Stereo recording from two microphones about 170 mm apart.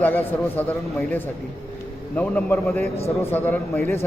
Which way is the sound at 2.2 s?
10° left (ahead or behind).